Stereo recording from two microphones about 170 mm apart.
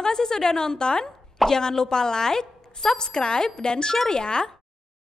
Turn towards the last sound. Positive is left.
turn(degrees=5)  # may be behind; listen again after turning